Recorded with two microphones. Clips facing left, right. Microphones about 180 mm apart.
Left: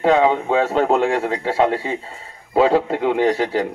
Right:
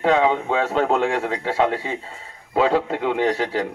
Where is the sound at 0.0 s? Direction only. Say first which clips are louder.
Left 3 dB; 35° left (ahead or behind).